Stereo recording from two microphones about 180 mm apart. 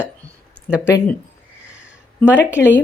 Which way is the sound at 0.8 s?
10° left (ahead or behind).